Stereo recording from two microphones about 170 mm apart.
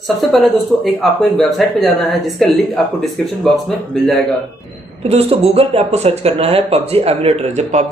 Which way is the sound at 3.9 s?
Centre (ahead or behind).